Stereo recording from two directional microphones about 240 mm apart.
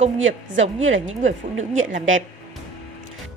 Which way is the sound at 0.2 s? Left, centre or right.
Right.